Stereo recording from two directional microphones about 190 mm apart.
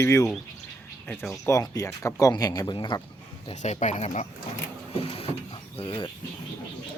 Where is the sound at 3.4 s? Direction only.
35° left (ahead or behind).